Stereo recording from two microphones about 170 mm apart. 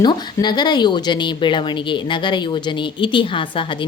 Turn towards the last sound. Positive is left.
turn(degrees=30)  # may be behind; listen again after turning